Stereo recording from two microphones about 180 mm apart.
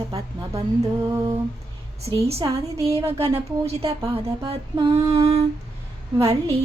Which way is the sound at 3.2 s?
35° right (ahead or behind).